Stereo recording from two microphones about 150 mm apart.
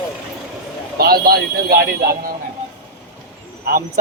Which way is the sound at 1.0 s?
90° right.